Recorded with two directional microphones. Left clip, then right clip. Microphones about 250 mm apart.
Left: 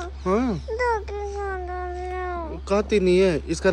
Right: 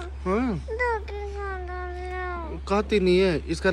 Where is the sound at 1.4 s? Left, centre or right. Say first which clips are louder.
Left 3 dB; centre.